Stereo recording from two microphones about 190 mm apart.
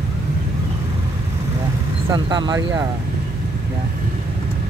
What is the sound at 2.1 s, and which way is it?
Speech, 25° right (ahead or behind).